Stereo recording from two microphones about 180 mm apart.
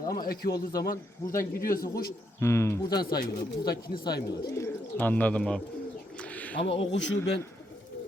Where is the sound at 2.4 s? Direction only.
15° left (ahead or behind).